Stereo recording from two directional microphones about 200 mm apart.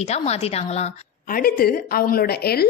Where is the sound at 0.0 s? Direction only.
30° left (ahead or behind).